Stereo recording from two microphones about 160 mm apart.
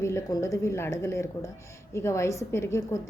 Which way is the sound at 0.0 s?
20° left (ahead or behind).